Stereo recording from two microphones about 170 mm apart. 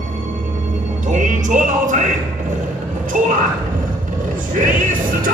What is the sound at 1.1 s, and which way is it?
Speech, 50° right (ahead or behind).